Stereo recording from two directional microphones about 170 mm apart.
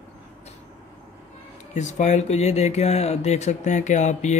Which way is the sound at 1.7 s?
45° left (ahead or behind).